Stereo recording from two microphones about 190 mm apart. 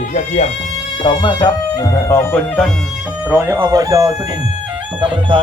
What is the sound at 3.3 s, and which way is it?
Speech, 10° right (ahead or behind).